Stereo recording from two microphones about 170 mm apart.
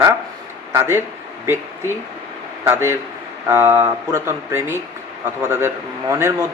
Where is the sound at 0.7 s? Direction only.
15° right (ahead or behind).